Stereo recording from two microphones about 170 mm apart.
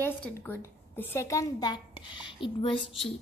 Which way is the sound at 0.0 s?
10° left (ahead or behind).